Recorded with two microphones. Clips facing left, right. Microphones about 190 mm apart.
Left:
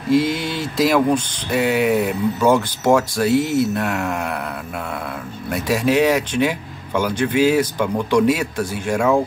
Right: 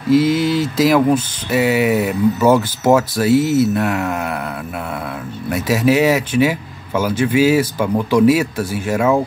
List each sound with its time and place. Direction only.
0.1 s speech: centre (ahead or behind)
5.5 s speech: 5° right (ahead or behind)